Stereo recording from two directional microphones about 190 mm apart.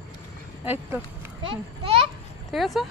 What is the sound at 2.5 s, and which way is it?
Speech, centre (ahead or behind).